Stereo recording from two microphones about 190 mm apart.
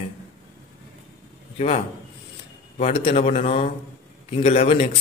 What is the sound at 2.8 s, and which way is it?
Speech, 30° left (ahead or behind).